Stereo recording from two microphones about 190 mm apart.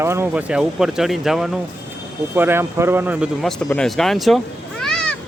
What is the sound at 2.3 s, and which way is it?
Speech, 10° right (ahead or behind).